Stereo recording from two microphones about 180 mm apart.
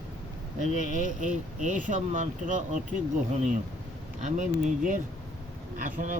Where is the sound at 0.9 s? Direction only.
45° right (ahead or behind).